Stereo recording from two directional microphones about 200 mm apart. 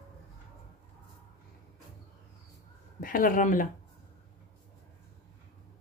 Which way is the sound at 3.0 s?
45° left (ahead or behind).